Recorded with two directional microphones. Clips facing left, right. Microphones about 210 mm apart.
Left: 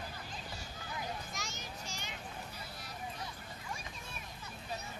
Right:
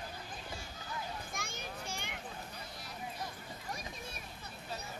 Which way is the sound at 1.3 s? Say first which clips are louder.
Right 2 dB; 55° right (ahead or behind).